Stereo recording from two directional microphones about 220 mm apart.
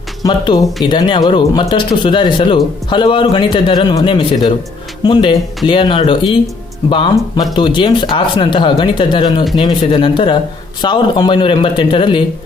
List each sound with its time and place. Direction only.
0.2 s speech: 20° left (ahead or behind)